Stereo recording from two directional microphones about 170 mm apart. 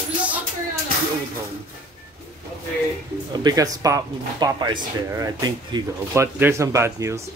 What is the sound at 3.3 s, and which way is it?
Speech, 25° right (ahead or behind).